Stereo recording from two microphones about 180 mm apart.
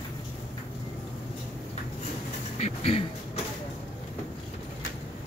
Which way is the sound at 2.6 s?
30° left (ahead or behind).